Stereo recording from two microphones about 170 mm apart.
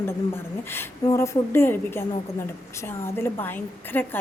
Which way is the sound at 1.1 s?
15° left (ahead or behind).